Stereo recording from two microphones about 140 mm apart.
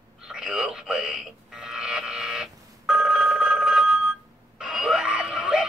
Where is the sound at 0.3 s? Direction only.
5° right (ahead or behind).